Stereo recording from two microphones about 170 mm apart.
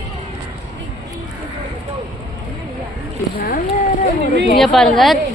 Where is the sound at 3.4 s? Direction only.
55° left (ahead or behind).